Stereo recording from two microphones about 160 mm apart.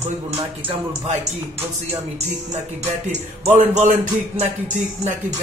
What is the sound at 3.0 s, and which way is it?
Speech, 45° right (ahead or behind).